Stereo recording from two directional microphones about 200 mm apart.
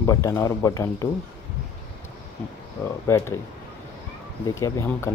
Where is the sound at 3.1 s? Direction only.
15° left (ahead or behind).